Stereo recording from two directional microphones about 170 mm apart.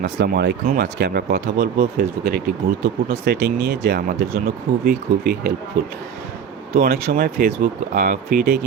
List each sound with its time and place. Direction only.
0.0 s speech: 80° right; by 2.4 s 60° right (ahead or behind)
3.1 s speech: 70° right (ahead or behind); by 5.9 s 50° right (ahead or behind)
6.7 s speech: 65° right (ahead or behind)